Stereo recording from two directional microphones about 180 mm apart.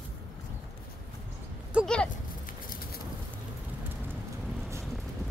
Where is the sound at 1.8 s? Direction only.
5° right (ahead or behind).